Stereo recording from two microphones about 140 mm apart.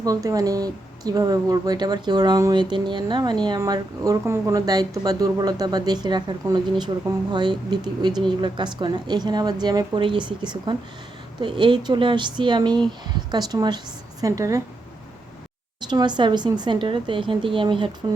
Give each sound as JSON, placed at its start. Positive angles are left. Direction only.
{"t": 0.0, "sound": "a woman's voice", "side_deg": -25}
{"t": 15.9, "sound": "a woman's voice", "side_deg": -30}